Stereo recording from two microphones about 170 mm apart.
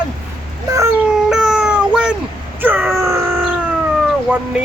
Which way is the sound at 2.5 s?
10° right (ahead or behind).